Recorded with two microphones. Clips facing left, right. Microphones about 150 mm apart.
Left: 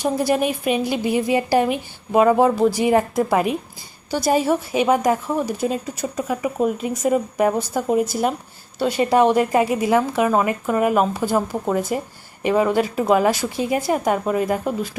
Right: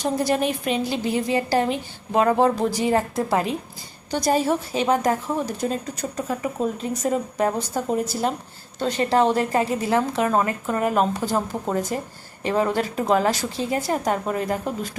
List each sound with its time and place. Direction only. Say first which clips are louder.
0.0 s speech: left 2 dB; 10° left (ahead or behind)